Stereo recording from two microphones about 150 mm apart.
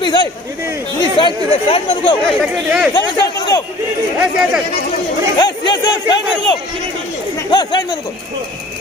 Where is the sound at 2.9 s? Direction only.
25° left (ahead or behind).